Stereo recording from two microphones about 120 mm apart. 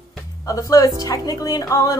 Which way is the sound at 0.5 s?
30° left (ahead or behind).